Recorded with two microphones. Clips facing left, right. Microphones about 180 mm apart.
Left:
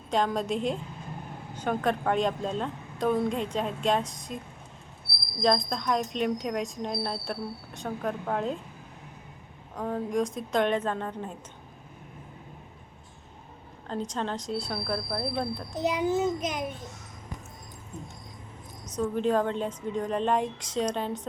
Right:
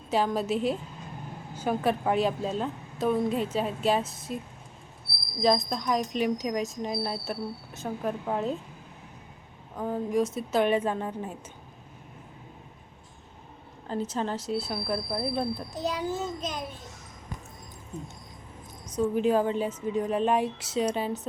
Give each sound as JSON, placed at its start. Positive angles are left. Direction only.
{"t": 0.1, "sound": "speech", "side_deg": -5}
{"t": 5.4, "sound": "speech", "side_deg": -5}
{"t": 9.7, "sound": "speech", "side_deg": -5}
{"t": 13.8, "sound": "a woman's voice", "side_deg": -5}
{"t": 15.7, "sound": "a child's voice", "side_deg": 20}
{"t": 18.9, "sound": "a woman's voice", "side_deg": -10}